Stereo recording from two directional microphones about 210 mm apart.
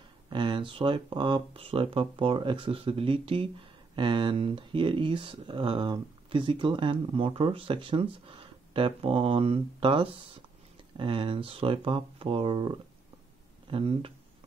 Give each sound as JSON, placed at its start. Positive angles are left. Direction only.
{"t": 0.3, "sound": "speech", "side_deg": -20}